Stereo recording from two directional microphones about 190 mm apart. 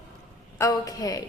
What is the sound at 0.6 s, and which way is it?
Speech, 20° left (ahead or behind).